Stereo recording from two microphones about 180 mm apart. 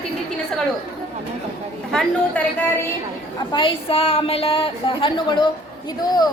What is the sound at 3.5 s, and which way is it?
Speech, 30° left (ahead or behind).